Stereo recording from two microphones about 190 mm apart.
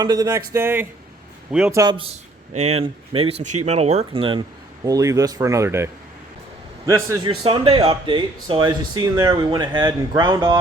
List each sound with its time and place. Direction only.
0.0 s a man's voice: 20° right (ahead or behind)
1.7 s a man's voice: 20° right (ahead or behind)
7.3 s speech: 30° right (ahead or behind)